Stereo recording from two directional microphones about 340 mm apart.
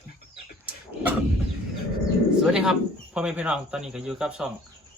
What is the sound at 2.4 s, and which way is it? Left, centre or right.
Speech, centre.